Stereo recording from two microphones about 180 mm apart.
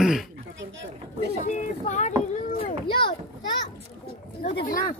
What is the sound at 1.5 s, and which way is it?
Speech, 40° left (ahead or behind).